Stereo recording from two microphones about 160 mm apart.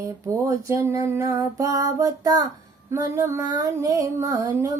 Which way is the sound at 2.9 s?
20° right (ahead or behind).